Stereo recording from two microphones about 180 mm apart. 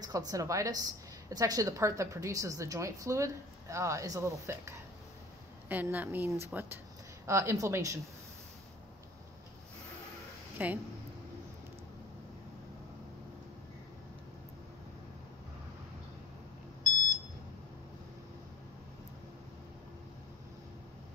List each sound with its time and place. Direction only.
0.0 s a woman's voice: 20° right (ahead or behind)
10.6 s a woman's voice: 10° right (ahead or behind)